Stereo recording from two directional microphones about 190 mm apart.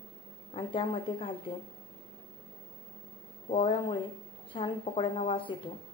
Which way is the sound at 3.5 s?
25° left (ahead or behind).